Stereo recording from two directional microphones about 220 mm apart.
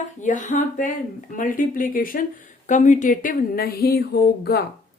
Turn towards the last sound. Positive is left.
turn(degrees=45)  # may be behind; listen again after turning